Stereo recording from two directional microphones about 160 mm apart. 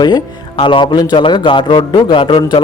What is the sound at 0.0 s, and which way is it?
A man's voice, 30° left (ahead or behind).